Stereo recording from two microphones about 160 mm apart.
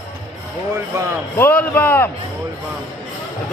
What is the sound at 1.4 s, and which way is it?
Speech, 10° left (ahead or behind).